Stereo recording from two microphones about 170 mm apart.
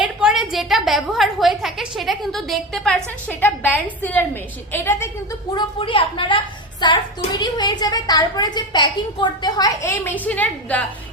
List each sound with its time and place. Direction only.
0.0 s a woman's voice: 5° right (ahead or behind); by 5.0 s 15° left (ahead or behind)
5.5 s a woman's voice: 30° left (ahead or behind); by 10.8 s 10° left (ahead or behind)